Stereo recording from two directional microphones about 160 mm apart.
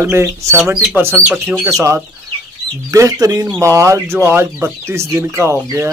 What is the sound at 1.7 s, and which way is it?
Speech, 20° right (ahead or behind).